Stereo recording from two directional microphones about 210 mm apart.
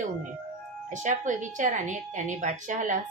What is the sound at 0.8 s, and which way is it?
A woman's voice, 35° right (ahead or behind).